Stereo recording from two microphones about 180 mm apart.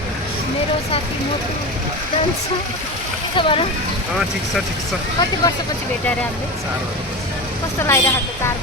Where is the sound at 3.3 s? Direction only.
30° left (ahead or behind).